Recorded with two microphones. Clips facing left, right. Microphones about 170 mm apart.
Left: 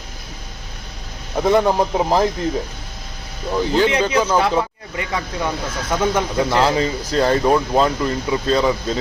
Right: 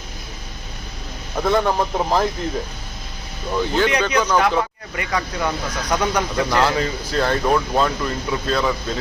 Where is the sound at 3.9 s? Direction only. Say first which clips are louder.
Left 1 dB; 25° left (ahead or behind).